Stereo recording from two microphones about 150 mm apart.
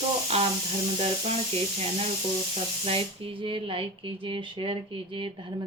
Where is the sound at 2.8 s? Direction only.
40° right (ahead or behind).